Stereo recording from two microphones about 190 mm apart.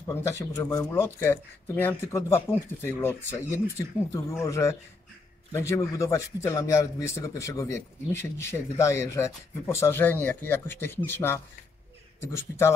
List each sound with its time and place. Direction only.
0.0 s a man's voice: 15° left (ahead or behind)